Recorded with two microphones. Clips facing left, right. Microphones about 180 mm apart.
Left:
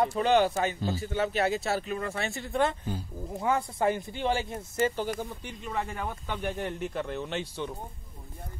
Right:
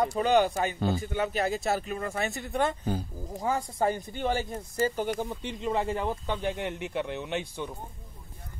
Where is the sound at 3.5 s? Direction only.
35° right (ahead or behind).